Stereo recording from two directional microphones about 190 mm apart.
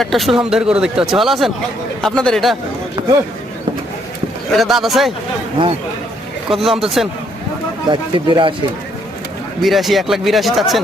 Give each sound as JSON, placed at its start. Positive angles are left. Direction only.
{"t": 0.0, "sound": "speech", "side_deg": 0}
{"t": 4.5, "sound": "speech", "side_deg": 0}
{"t": 6.5, "sound": "speech", "side_deg": 0}
{"t": 7.9, "sound": "speech", "side_deg": -25}
{"t": 9.6, "sound": "speech", "side_deg": 0}